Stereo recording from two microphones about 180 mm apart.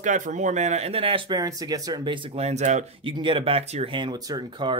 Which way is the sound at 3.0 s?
25° right (ahead or behind).